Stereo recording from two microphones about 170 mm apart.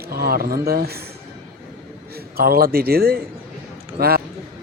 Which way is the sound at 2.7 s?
65° right (ahead or behind).